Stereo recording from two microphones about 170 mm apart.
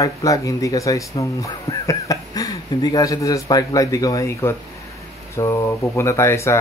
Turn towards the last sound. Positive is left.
turn(degrees=15)  # may be behind; listen again after turning